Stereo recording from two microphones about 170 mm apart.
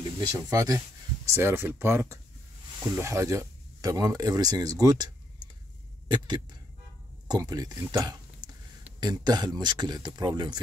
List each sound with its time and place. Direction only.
0.2 s speech: 20° right (ahead or behind)
7.2 s speech: 20° right (ahead or behind)